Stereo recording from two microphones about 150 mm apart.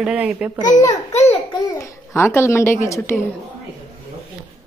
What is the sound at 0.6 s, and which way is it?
A woman's voice, 25° left (ahead or behind).